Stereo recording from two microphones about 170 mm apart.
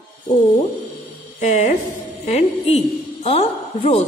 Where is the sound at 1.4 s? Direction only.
45° left (ahead or behind).